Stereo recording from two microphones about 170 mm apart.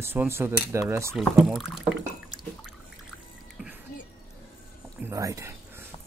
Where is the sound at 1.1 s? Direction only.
Centre (ahead or behind).